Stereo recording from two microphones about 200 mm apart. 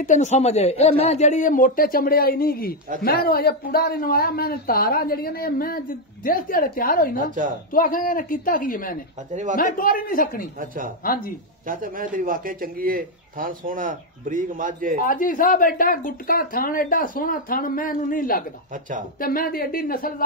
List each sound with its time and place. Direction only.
0.0 s speech: 35° left (ahead or behind)
7.2 s speech: 40° right (ahead or behind)
7.7 s speech: 45° left (ahead or behind)
9.3 s speech: 35° right (ahead or behind)
9.6 s speech: 45° left (ahead or behind)
11.6 s a man's voice: 45° right (ahead or behind)
15.0 s speech: 45° left (ahead or behind)
18.7 s speech: 40° right (ahead or behind)
19.1 s speech: 45° left (ahead or behind)